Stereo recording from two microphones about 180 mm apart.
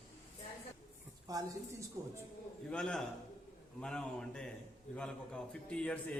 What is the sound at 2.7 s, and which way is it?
A man's voice, 5° left (ahead or behind).